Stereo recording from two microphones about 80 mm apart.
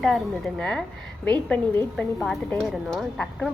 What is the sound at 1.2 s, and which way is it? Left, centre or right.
Speech, centre.